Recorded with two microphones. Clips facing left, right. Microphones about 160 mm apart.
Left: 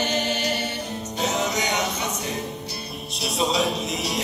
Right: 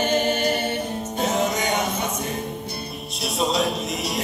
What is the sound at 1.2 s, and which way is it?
Music, 50° right (ahead or behind).